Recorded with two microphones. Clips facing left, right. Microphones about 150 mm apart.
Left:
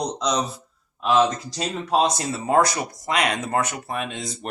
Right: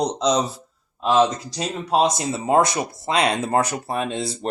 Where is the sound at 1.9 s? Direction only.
15° right (ahead or behind).